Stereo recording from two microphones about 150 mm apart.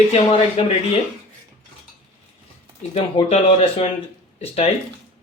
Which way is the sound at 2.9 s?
40° left (ahead or behind).